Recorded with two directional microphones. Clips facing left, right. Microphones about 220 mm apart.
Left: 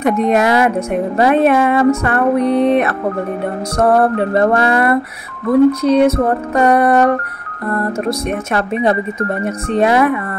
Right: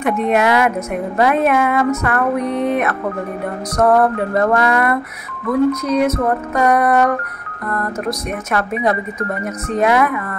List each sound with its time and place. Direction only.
0.0 s a woman's voice: 40° left (ahead or behind)
3.7 s music: 30° left (ahead or behind)
5.5 s a woman's voice: 30° left (ahead or behind)
9.4 s a woman's voice: 30° left (ahead or behind)